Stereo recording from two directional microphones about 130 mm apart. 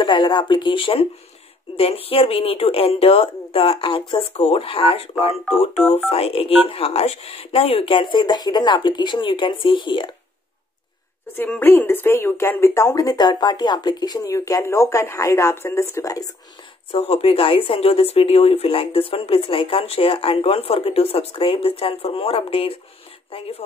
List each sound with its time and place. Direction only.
0.0 s speech: 35° left (ahead or behind)
11.3 s speech: 15° left (ahead or behind)
16.9 s speech: 45° left (ahead or behind)